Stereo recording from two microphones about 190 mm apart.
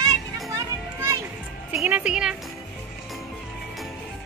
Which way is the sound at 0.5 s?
15° right (ahead or behind).